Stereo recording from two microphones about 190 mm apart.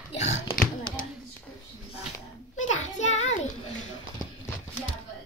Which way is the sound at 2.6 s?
40° left (ahead or behind).